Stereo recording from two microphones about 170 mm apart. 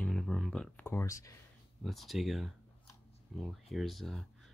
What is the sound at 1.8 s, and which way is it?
Speech, centre (ahead or behind).